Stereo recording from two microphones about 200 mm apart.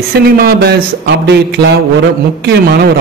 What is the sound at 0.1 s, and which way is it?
Speech, 55° right (ahead or behind).